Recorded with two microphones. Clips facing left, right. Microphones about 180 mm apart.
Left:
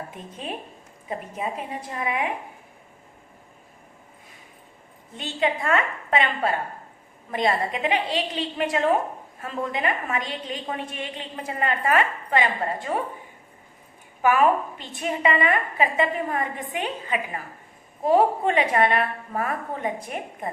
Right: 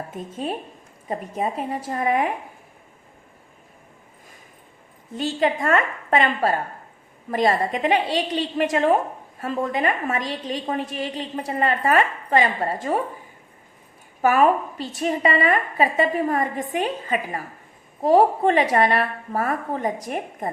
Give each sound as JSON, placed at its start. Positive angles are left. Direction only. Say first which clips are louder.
{"t": 0.1, "sound": "a woman's voice", "louder": "right 6 dB", "side_deg": -45}
{"t": 5.1, "sound": "a woman's voice", "louder": "right 4 dB", "side_deg": -40}
{"t": 14.2, "sound": "a woman's voice", "louder": "right 2 dB", "side_deg": -40}